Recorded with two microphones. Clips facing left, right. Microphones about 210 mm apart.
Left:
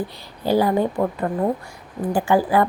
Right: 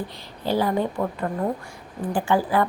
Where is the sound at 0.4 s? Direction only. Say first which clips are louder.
Left 4 dB; 40° left (ahead or behind).